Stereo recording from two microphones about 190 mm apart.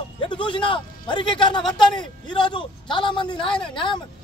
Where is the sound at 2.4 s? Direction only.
25° left (ahead or behind).